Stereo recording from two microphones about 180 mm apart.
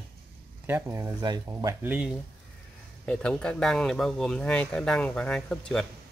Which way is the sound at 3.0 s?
5° left (ahead or behind).